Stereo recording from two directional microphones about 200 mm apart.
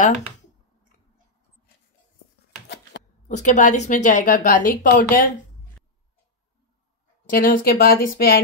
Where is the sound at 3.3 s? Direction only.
40° left (ahead or behind).